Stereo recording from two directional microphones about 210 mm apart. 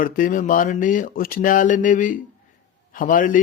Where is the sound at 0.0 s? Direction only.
40° left (ahead or behind).